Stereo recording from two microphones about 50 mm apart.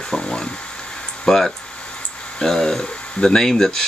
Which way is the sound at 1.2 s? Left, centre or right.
Centre.